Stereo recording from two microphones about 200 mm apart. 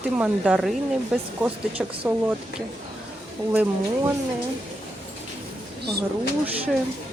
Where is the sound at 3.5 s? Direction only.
10° right (ahead or behind).